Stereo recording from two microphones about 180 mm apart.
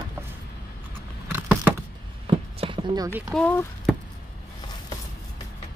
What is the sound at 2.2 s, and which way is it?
Clip-clop, 30° right (ahead or behind).